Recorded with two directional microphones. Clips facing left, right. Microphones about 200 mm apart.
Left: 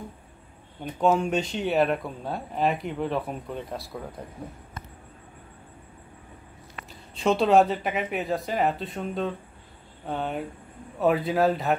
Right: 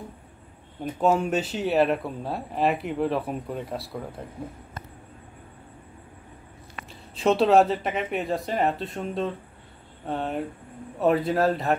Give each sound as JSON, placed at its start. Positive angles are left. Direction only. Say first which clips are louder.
{"t": 0.8, "sound": "speech", "louder": "even", "side_deg": -5}
{"t": 6.9, "sound": "speech", "louder": "right 2 dB", "side_deg": 0}